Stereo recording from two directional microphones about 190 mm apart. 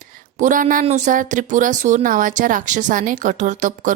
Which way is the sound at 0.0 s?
45° right (ahead or behind).